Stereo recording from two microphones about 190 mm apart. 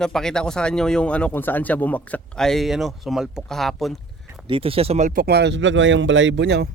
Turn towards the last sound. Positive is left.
turn(degrees=-65)  # may be behind; listen again after turning